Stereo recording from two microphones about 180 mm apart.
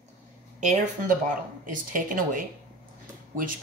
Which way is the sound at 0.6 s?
40° right (ahead or behind).